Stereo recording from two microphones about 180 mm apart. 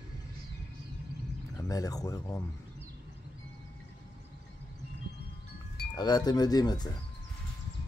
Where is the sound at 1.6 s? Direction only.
20° left (ahead or behind).